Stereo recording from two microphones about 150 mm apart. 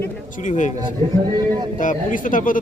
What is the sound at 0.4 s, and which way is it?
Speech, 55° left (ahead or behind).